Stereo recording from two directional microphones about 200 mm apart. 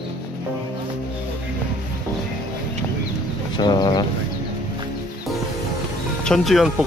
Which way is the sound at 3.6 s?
20° left (ahead or behind).